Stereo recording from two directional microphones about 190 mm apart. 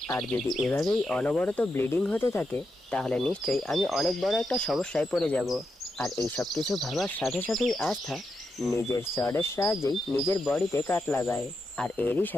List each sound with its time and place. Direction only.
0.2 s speech: centre (ahead or behind)
8.7 s speech: 15° left (ahead or behind)